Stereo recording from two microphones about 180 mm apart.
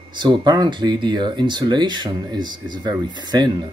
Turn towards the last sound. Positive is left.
turn(degrees=-25)  # may be behind; listen again after turning